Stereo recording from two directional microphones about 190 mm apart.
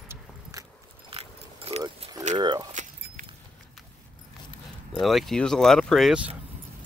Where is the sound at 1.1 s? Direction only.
30° right (ahead or behind).